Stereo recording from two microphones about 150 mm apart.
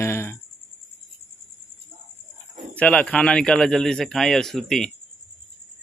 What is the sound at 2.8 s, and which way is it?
A man's voice, 5° left (ahead or behind).